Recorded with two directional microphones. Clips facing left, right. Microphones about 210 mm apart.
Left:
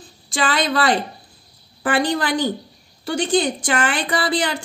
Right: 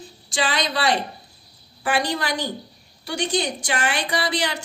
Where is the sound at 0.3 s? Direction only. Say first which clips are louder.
Left 4 dB; 55° left (ahead or behind).